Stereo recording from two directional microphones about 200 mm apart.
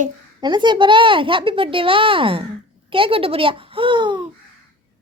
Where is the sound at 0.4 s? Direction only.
20° right (ahead or behind).